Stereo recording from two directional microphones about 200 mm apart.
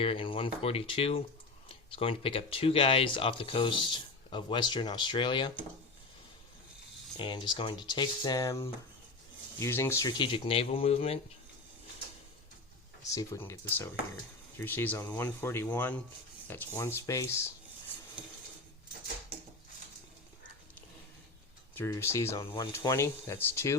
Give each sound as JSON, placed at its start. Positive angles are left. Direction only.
{"t": 0.0, "sound": "speech", "side_deg": 25}
{"t": 7.2, "sound": "speech", "side_deg": 25}
{"t": 13.1, "sound": "speech", "side_deg": 15}
{"t": 21.8, "sound": "speech", "side_deg": 15}